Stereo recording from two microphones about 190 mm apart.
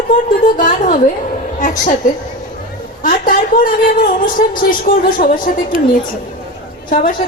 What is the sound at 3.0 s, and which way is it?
A woman's voice, 45° left (ahead or behind).